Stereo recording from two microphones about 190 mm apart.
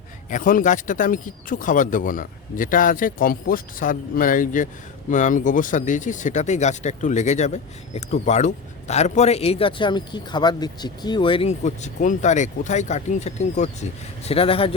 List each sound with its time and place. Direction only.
0.3 s speech: 45° left (ahead or behind); by 14.8 s 30° left (ahead or behind)